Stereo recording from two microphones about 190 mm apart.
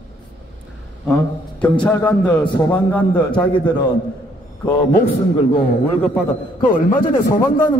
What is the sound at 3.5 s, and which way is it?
Speech, 25° left (ahead or behind).